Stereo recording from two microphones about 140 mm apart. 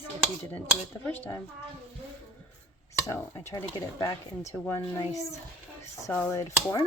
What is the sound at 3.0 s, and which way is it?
Speech, 15° left (ahead or behind).